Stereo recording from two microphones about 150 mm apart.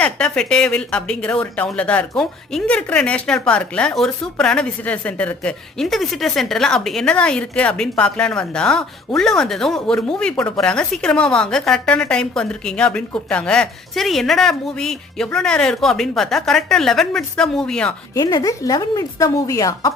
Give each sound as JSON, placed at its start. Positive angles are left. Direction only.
{"t": 0.0, "sound": "speech", "side_deg": 5}
{"t": 18.1, "sound": "a woman's voice", "side_deg": 25}